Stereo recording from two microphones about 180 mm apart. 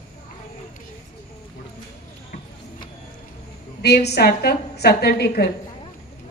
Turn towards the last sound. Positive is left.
turn(degrees=65)  # may be behind; listen again after turning